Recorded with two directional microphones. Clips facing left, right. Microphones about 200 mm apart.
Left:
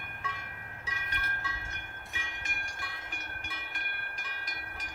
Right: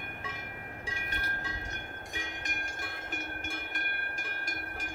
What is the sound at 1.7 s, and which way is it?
Train, 40° right (ahead or behind).